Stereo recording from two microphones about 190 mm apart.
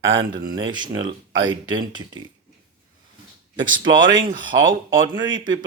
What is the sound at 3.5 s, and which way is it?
Speech, 25° right (ahead or behind).